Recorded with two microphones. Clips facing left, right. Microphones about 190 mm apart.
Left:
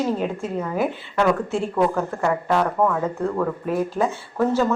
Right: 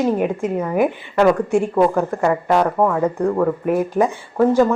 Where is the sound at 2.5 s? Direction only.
20° right (ahead or behind).